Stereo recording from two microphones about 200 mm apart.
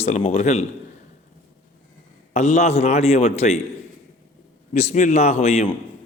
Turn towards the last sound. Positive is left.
turn(degrees=35)  # may be behind; listen again after turning